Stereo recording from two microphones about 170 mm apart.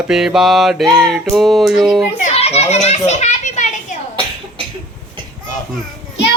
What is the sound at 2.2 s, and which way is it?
Children playing, 40° left (ahead or behind).